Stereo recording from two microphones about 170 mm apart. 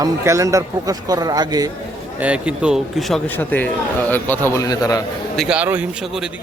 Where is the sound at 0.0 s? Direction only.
20° right (ahead or behind).